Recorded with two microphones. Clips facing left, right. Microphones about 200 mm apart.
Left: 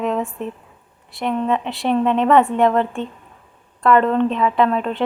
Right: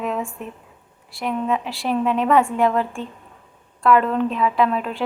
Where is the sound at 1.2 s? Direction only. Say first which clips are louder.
Left 3 dB; 5° right (ahead or behind).